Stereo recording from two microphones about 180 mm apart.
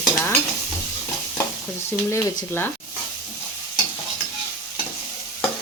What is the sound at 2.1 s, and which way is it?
Speech, 15° left (ahead or behind).